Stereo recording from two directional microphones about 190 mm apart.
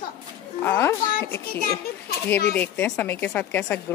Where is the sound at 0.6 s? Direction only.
10° left (ahead or behind).